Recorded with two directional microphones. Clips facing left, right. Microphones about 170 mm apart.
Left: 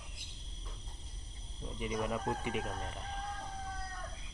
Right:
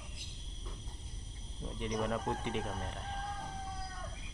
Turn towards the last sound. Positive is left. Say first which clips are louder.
# even
turn(degrees=0)  # may be behind; listen again after turning